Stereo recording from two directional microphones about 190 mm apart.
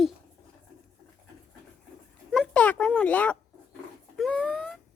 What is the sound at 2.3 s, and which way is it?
Speech, 5° left (ahead or behind).